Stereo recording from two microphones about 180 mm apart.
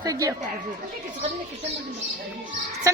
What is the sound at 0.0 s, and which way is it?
Speech, 20° right (ahead or behind).